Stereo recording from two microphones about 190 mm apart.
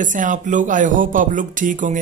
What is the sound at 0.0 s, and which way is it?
Speech, 40° right (ahead or behind).